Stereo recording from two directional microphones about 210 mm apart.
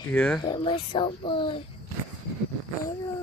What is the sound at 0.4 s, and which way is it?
A child's voice, 25° left (ahead or behind).